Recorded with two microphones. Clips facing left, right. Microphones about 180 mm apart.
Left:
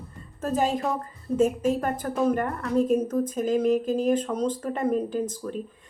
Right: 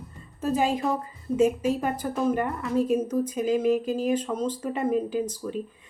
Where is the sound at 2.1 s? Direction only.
5° right (ahead or behind).